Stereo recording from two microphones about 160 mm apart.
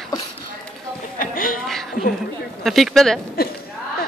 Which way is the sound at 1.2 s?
60° left (ahead or behind).